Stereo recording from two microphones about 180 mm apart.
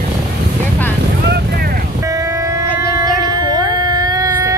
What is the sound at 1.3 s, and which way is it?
Boat, 60° right (ahead or behind).